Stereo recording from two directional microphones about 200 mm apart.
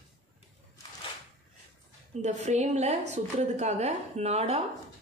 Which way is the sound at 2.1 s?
35° right (ahead or behind).